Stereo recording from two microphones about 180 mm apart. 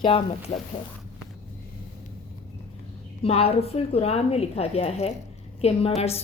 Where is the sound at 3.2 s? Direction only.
35° left (ahead or behind).